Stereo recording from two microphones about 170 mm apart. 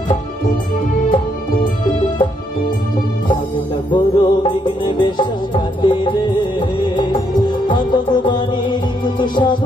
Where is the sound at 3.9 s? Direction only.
30° left (ahead or behind).